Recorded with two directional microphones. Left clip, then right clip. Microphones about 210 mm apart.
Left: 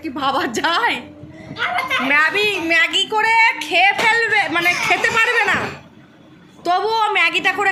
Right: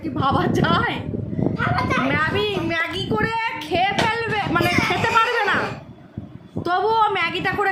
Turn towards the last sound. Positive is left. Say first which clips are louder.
# left 5 dB
turn(degrees=-15)  # may be behind; listen again after turning